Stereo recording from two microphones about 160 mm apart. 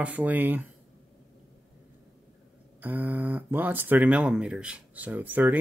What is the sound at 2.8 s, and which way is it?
Speech, 10° right (ahead or behind).